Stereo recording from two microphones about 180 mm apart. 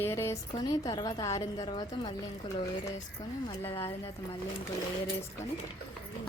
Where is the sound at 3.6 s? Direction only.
15° left (ahead or behind).